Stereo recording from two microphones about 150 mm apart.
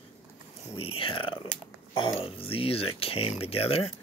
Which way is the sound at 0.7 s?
35° left (ahead or behind).